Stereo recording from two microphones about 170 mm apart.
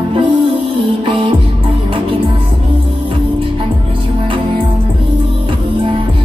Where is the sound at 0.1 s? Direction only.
30° right (ahead or behind).